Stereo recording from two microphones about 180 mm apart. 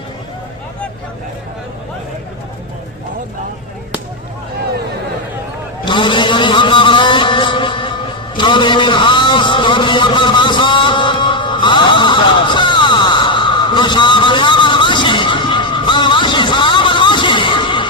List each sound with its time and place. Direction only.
5.8 s vehicle: 25° left (ahead or behind)